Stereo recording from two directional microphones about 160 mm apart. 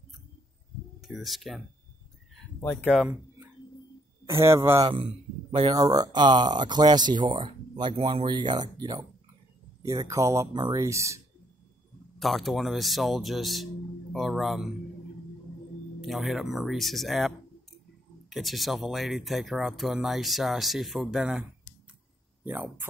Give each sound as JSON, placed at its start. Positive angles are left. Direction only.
{"t": 1.0, "sound": "speech", "side_deg": 0}
{"t": 2.6, "sound": "speech", "side_deg": 15}
{"t": 2.9, "sound": "speech", "side_deg": -5}
{"t": 4.3, "sound": "speech", "side_deg": -15}
{"t": 5.8, "sound": "speech", "side_deg": -25}
{"t": 12.2, "sound": "speech", "side_deg": 0}
{"t": 16.0, "sound": "speech", "side_deg": 0}
{"t": 18.3, "sound": "speech", "side_deg": 0}